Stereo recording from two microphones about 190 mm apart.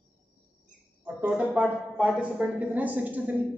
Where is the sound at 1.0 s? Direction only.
5° right (ahead or behind).